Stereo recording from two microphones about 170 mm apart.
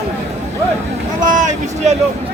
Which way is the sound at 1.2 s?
50° right (ahead or behind).